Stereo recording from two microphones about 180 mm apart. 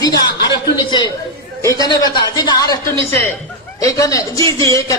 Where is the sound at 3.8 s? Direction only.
20° left (ahead or behind).